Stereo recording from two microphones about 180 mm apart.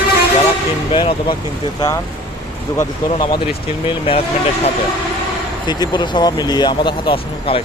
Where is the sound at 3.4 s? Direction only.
30° left (ahead or behind).